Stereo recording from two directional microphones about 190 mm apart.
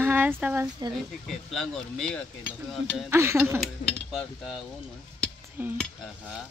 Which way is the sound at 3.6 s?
Centre (ahead or behind).